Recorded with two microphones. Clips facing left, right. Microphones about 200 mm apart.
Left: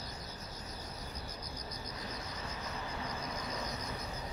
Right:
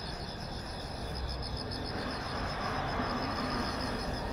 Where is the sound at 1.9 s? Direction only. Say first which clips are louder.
Right 6 dB; 60° right (ahead or behind).